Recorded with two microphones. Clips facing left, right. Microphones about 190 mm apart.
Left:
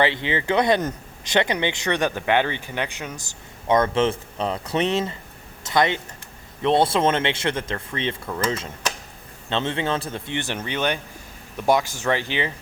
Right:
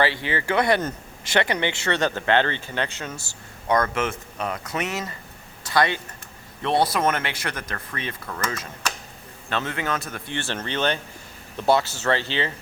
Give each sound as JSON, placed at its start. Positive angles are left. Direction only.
{"t": 0.0, "sound": "speech", "side_deg": 20}